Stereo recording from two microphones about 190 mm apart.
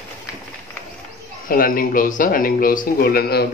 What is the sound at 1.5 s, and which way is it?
Speech, 50° left (ahead or behind).